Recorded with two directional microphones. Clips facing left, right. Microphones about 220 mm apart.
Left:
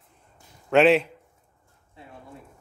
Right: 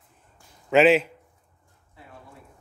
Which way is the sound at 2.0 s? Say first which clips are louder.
Left 2 dB; 25° left (ahead or behind).